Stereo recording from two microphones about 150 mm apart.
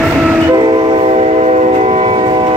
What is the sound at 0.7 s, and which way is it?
Train, 35° right (ahead or behind).